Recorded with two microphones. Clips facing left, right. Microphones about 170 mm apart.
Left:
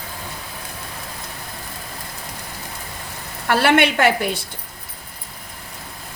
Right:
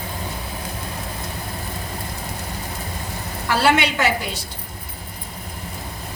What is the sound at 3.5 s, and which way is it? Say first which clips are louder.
Speech: left 2 dB; 55° left (ahead or behind).